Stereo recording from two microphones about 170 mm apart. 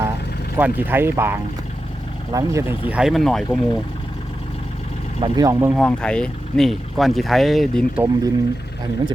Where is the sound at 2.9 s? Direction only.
Centre (ahead or behind).